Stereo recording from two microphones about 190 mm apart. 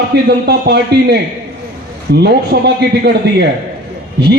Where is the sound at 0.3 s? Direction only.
60° right (ahead or behind).